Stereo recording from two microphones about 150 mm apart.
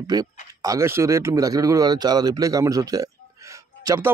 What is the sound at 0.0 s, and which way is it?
Speech, 25° right (ahead or behind).